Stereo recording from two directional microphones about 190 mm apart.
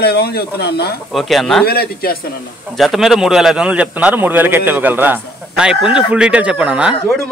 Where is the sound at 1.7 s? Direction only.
55° left (ahead or behind).